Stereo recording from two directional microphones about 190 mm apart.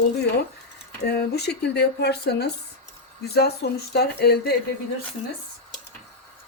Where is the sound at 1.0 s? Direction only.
55° left (ahead or behind).